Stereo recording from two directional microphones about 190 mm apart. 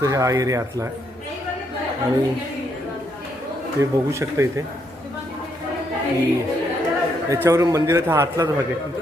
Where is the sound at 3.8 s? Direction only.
15° right (ahead or behind).